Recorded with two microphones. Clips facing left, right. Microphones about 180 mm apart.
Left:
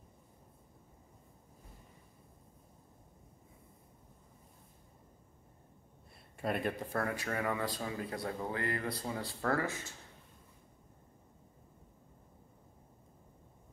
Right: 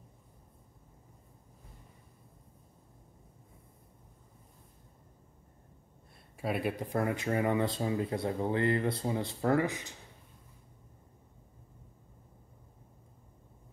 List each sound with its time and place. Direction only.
6.3 s speech: 5° right (ahead or behind)